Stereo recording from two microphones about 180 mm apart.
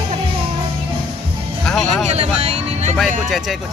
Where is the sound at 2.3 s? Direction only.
35° right (ahead or behind).